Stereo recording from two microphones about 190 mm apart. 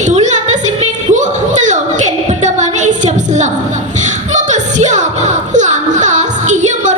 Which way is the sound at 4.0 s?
40° right (ahead or behind).